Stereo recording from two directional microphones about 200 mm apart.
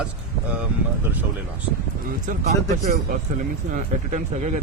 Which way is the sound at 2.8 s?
40° right (ahead or behind).